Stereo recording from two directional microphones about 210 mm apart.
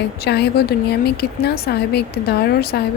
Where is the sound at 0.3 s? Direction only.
50° left (ahead or behind).